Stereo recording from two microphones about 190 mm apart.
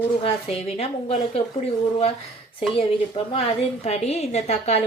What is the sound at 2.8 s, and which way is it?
A woman's voice, 30° left (ahead or behind).